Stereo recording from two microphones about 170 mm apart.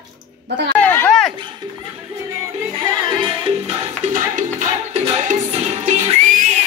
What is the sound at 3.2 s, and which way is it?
Music, 40° right (ahead or behind).